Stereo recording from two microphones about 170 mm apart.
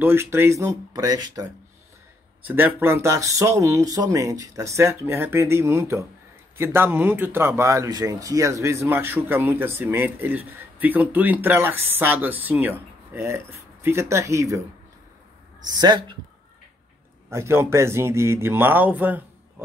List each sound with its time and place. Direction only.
0.0 s speech: 15° right (ahead or behind)
15.8 s speech: 25° right (ahead or behind)
17.3 s speech: 15° right (ahead or behind)